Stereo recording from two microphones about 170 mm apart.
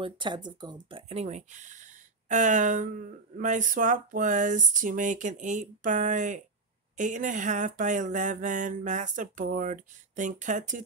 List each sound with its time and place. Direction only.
0.0 s speech: 25° right (ahead or behind); by 10.8 s 50° right (ahead or behind)